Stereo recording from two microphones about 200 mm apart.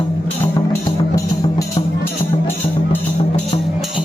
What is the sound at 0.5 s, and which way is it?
Music, 20° left (ahead or behind).